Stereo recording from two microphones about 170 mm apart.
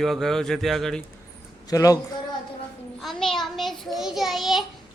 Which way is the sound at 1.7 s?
20° left (ahead or behind).